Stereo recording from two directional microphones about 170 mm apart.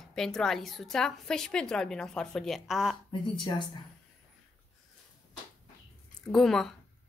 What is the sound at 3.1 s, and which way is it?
Speech, 30° left (ahead or behind).